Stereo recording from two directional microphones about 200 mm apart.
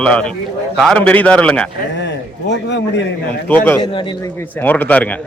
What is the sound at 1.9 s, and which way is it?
A man's voice, 65° left (ahead or behind).